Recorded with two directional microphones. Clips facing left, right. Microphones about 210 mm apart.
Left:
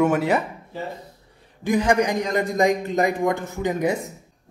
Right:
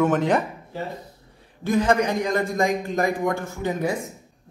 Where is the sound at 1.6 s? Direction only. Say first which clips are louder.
Left 1 dB; 15° left (ahead or behind).